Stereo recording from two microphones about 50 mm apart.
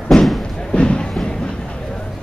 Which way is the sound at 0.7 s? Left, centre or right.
Left.